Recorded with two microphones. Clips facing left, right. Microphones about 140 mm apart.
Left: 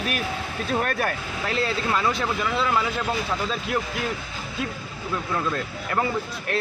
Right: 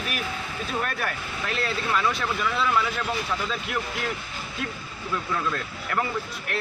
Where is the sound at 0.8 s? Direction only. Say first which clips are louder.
Left 4 dB; 35° left (ahead or behind).